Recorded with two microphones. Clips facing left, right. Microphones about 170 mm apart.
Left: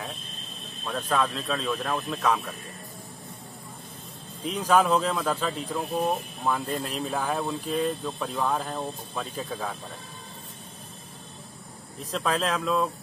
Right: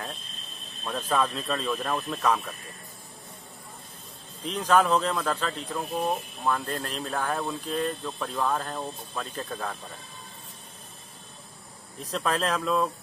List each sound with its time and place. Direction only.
0.8 s speech: 5° right (ahead or behind)
4.5 s speech: 5° left (ahead or behind)
12.0 s speech: centre (ahead or behind)